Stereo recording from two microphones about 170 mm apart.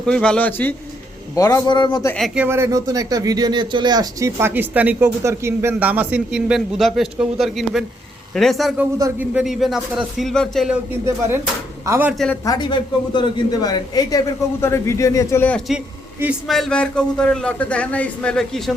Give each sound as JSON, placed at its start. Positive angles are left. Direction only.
{"t": 0.0, "sound": "speech", "side_deg": 5}
{"t": 1.4, "sound": "a man's voice", "side_deg": 20}
{"t": 2.1, "sound": "a man's voice", "side_deg": -5}
{"t": 8.8, "sound": "speech", "side_deg": -15}
{"t": 9.3, "sound": "a man's voice", "side_deg": 0}
{"t": 10.9, "sound": "speech", "side_deg": -15}
{"t": 12.5, "sound": "a man's voice", "side_deg": 25}